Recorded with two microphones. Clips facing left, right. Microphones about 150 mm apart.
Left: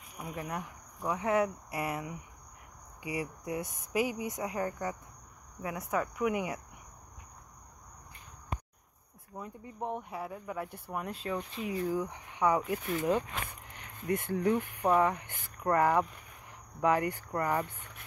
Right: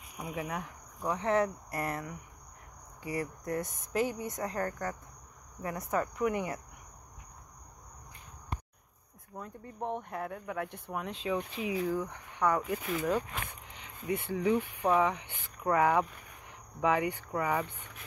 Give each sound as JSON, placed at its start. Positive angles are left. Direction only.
{"t": 0.2, "sound": "speech", "side_deg": -5}
{"t": 1.1, "sound": "speech", "side_deg": 10}
{"t": 9.4, "sound": "speech", "side_deg": 10}
{"t": 11.9, "sound": "speech", "side_deg": 10}
{"t": 14.0, "sound": "speech", "side_deg": -10}
{"t": 14.9, "sound": "speech", "side_deg": 0}